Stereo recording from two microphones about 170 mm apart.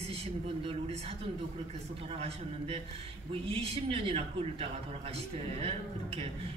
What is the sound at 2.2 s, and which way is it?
Speech, 35° right (ahead or behind).